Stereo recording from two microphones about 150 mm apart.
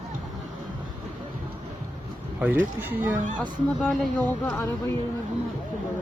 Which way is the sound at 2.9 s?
10° right (ahead or behind).